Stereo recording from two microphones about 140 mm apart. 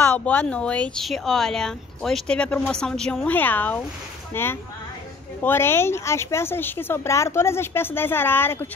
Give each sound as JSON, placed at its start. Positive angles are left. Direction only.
{"t": 0.0, "sound": "speech", "side_deg": 15}